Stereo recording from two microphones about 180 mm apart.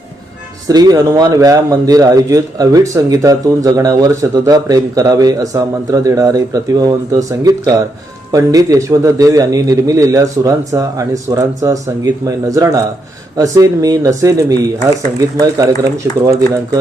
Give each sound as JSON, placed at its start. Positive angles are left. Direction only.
{"t": 0.7, "sound": "speech", "side_deg": -20}